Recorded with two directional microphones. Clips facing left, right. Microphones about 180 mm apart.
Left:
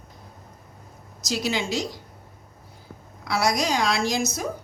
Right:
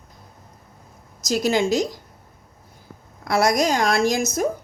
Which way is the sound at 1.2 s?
45° right (ahead or behind).